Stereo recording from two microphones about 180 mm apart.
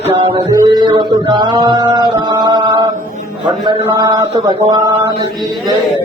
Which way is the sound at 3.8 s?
20° right (ahead or behind).